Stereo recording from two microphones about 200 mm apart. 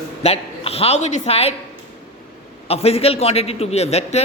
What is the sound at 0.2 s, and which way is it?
A woman's voice, 30° left (ahead or behind).